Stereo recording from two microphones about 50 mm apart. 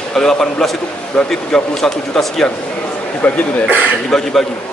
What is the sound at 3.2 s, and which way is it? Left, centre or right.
Speech, left.